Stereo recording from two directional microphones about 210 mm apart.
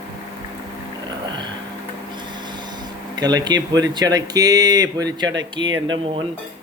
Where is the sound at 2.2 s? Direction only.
20° right (ahead or behind).